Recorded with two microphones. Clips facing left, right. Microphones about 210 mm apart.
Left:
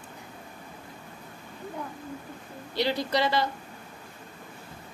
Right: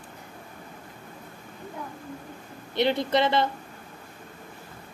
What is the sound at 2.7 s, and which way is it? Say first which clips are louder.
Speech: right 3 dB; 25° right (ahead or behind).